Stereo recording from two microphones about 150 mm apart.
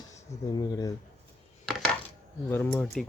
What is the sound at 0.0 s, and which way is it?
Speech, 20° left (ahead or behind).